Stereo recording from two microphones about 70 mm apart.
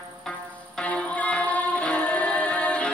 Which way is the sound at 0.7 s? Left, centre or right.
Centre.